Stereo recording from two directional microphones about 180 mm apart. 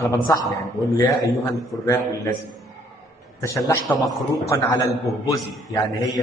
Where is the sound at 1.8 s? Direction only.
20° left (ahead or behind).